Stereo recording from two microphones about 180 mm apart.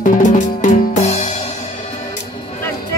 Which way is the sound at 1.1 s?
40° left (ahead or behind).